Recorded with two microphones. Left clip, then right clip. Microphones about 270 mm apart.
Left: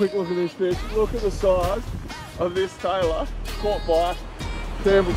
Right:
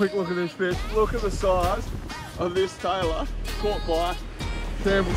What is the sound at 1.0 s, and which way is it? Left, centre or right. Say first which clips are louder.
Speech: left 1 dB; centre.